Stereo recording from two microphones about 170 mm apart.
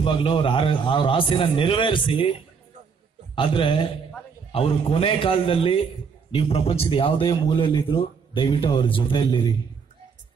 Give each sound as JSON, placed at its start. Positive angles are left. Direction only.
{"t": 0.0, "sound": "a man's voice", "side_deg": 30}
{"t": 3.3, "sound": "a man's voice", "side_deg": 30}